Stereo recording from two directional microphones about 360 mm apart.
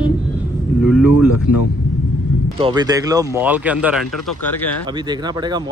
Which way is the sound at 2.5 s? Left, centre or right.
Centre.